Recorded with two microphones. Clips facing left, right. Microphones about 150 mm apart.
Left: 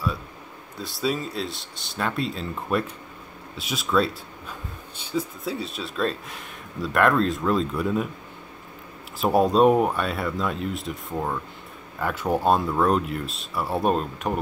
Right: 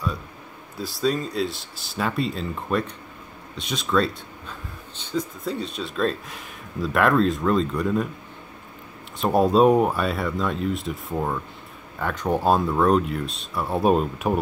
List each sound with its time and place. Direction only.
0.7 s speech: centre (ahead or behind)
9.2 s speech: centre (ahead or behind)